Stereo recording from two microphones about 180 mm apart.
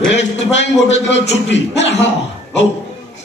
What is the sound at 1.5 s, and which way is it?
Speech, 85° left.